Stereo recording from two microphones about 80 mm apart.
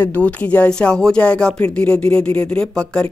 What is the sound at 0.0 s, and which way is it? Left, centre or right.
Speech, centre.